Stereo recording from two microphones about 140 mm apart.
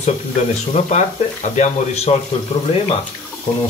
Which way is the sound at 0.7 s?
55° left (ahead or behind).